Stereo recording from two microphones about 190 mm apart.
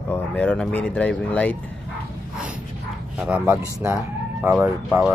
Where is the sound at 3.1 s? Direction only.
5° right (ahead or behind).